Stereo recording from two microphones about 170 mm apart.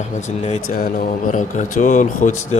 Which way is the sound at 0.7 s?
50° left (ahead or behind).